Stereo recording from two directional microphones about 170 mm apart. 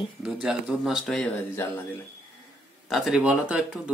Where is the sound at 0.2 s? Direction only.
5° right (ahead or behind).